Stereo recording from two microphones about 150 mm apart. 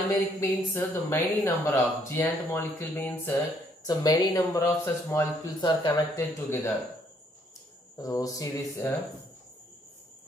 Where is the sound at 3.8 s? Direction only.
25° left (ahead or behind).